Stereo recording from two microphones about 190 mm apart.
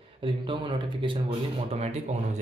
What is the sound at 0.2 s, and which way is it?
Speech, 30° right (ahead or behind).